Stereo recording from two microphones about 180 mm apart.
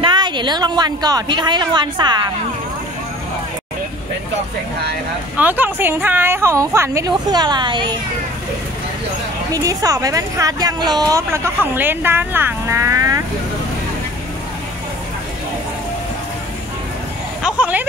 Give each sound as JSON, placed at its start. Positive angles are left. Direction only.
{"t": 0.0, "sound": "speech", "side_deg": -25}
{"t": 5.4, "sound": "a woman's voice", "side_deg": -10}
{"t": 9.5, "sound": "a woman's voice", "side_deg": -20}
{"t": 17.4, "sound": "vehicle", "side_deg": -5}